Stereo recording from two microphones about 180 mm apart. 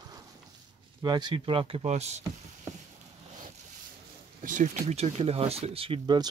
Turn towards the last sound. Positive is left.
turn(degrees=-25)  # may be behind; listen again after turning